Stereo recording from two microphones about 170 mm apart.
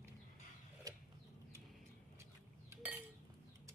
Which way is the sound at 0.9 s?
20° right (ahead or behind).